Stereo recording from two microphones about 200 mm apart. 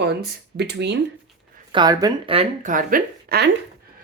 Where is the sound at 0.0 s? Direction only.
55° right (ahead or behind).